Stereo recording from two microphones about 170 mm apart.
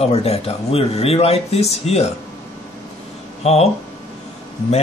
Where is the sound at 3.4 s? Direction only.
40° left (ahead or behind).